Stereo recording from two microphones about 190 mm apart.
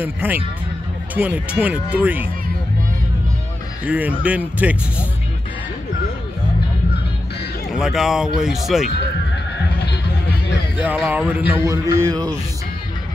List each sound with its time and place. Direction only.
0.0 s speech: 10° right (ahead or behind)
3.8 s speech: 10° right (ahead or behind)
7.7 s speech: centre (ahead or behind)
10.8 s speech: 10° right (ahead or behind)